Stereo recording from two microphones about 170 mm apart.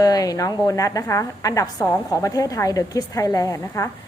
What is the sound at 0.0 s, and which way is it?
A woman's voice, 20° left (ahead or behind).